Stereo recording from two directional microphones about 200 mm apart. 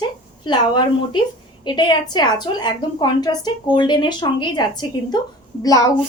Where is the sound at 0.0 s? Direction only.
20° left (ahead or behind).